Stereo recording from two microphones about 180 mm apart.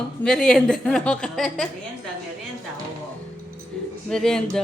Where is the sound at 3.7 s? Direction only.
5° left (ahead or behind).